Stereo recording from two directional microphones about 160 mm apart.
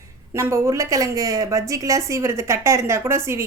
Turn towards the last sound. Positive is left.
turn(degrees=-15)  # may be behind; listen again after turning